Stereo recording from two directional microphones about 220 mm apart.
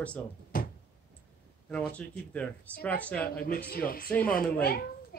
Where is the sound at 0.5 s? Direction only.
40° left (ahead or behind).